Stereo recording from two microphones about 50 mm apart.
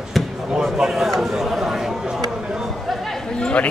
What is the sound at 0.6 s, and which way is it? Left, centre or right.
A man's voice, centre.